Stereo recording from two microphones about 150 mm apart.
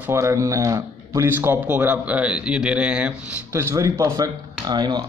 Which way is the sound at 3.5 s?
20° right (ahead or behind).